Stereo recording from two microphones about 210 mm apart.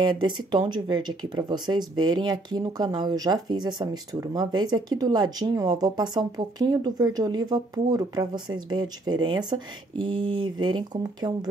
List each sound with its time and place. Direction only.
0.0 s speech: 20° right (ahead or behind)